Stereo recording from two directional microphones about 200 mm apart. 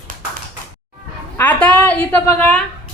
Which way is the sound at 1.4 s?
5° left (ahead or behind).